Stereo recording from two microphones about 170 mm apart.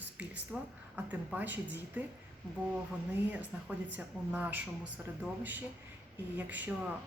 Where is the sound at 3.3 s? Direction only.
10° right (ahead or behind).